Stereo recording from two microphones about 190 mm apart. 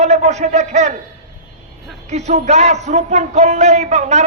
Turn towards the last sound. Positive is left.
turn(degrees=-35)  # may be behind; listen again after turning